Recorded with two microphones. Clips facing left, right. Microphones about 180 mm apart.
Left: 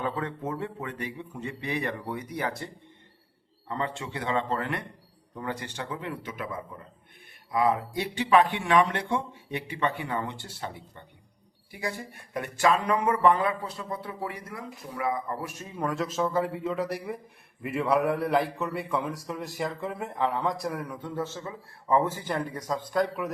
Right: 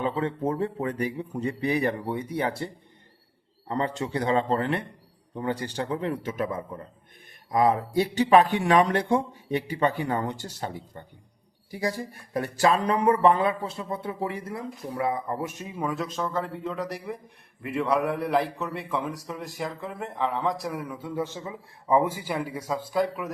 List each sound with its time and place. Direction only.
0.0 s speech: 25° right (ahead or behind)
0.5 s speech: 35° right (ahead or behind)
3.7 s speech: 35° right (ahead or behind); by 15.7 s 20° right (ahead or behind)
15.7 s a man's voice: 5° right (ahead or behind)